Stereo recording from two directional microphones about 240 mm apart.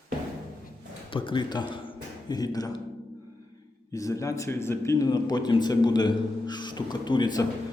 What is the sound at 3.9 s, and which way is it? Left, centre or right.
A man's voice, centre.